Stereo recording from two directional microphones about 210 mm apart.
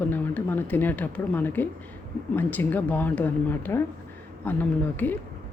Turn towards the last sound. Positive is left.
turn(degrees=10)  # may be behind; listen again after turning